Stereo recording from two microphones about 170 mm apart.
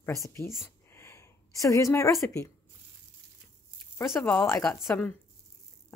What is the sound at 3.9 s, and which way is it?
Speech, 15° left (ahead or behind).